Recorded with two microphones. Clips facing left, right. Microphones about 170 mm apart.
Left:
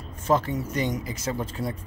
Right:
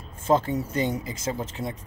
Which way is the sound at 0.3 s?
25° right (ahead or behind).